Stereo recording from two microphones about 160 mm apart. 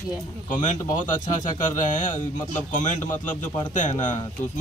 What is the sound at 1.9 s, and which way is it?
A man's voice, 55° left (ahead or behind).